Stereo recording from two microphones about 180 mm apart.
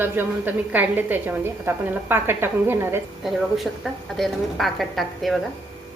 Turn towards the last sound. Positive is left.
turn(degrees=0)  # may be behind; listen again after turning